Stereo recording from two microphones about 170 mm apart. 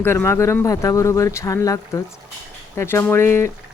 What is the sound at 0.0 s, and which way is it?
Speech, 15° left (ahead or behind).